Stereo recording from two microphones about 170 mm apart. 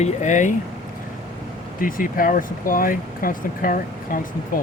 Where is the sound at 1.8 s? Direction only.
55° left (ahead or behind).